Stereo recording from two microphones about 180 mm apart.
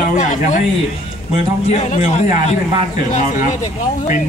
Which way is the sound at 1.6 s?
40° left (ahead or behind).